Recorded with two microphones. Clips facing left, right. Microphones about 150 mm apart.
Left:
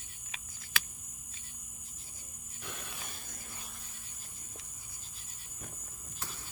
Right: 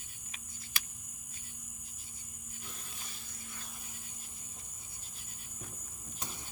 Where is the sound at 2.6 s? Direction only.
70° left (ahead or behind).